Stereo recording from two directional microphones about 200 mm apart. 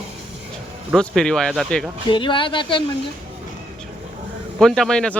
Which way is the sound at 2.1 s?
25° left (ahead or behind).